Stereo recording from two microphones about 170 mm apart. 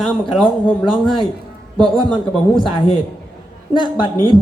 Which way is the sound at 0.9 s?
30° left (ahead or behind).